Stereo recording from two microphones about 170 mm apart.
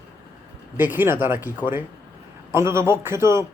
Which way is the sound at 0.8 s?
10° right (ahead or behind).